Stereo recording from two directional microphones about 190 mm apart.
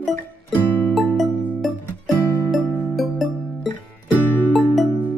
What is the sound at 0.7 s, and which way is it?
Music, 5° left (ahead or behind).